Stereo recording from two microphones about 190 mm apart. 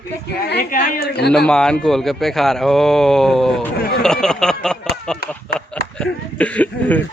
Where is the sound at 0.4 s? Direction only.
50° left (ahead or behind).